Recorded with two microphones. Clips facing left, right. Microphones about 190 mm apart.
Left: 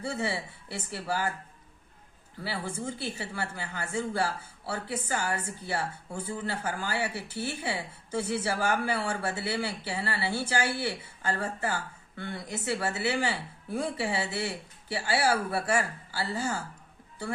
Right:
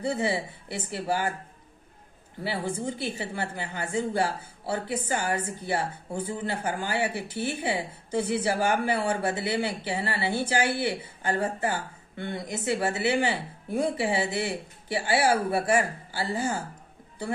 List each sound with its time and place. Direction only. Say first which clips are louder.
0.0 s a woman's voice: right 5 dB; 15° right (ahead or behind)
2.4 s a woman's voice: right 4 dB; 20° right (ahead or behind)